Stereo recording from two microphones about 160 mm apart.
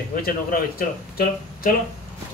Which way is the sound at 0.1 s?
65° left (ahead or behind).